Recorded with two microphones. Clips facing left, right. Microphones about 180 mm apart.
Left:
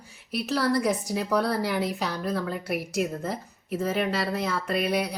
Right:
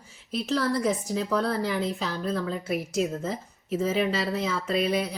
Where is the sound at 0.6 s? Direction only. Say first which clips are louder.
Left 3 dB; 75° left (ahead or behind).